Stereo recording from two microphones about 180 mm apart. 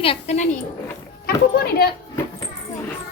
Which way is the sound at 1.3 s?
60° left (ahead or behind).